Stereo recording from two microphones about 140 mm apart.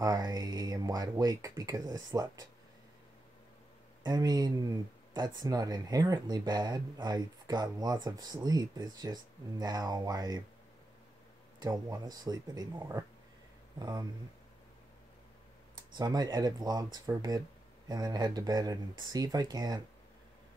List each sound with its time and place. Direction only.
0.0 s speech: 25° right (ahead or behind)
4.0 s speech: 30° right (ahead or behind)
11.6 s speech: 25° right (ahead or behind)
15.7 s speech: 30° right (ahead or behind)